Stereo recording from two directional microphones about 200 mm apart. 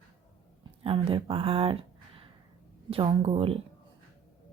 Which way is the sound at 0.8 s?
25° right (ahead or behind).